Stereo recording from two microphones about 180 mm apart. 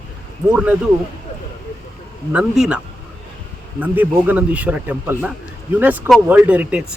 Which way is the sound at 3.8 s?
10° right (ahead or behind).